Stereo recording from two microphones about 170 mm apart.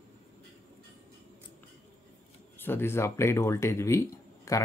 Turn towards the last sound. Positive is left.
turn(degrees=15)  # may be behind; listen again after turning